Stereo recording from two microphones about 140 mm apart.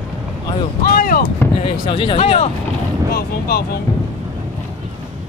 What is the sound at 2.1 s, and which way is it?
Speech, 50° left (ahead or behind).